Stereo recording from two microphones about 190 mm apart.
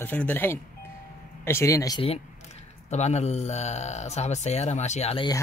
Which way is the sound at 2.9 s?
35° left (ahead or behind).